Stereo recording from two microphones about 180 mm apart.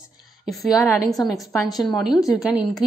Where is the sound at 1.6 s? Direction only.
20° left (ahead or behind).